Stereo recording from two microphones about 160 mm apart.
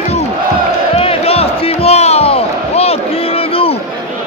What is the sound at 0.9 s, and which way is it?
Crowd, 40° left (ahead or behind).